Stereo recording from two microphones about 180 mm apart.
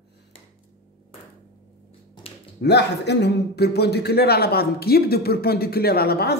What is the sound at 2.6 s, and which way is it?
A man's voice, 70° left (ahead or behind).